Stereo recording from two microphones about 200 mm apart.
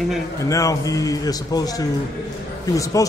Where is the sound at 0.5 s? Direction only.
15° left (ahead or behind).